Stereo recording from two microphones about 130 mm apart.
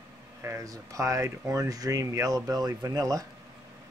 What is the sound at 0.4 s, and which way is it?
Speech, 25° right (ahead or behind).